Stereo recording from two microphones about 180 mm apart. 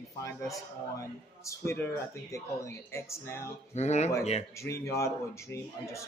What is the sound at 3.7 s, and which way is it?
Speech, 40° left (ahead or behind).